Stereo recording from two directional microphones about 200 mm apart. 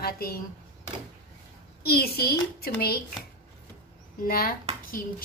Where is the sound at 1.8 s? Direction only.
50° left (ahead or behind).